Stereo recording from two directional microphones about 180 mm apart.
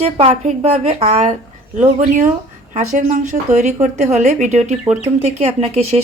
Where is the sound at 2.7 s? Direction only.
45° right (ahead or behind).